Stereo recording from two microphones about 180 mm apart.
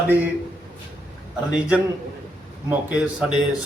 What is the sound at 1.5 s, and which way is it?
Speech, 5° right (ahead or behind).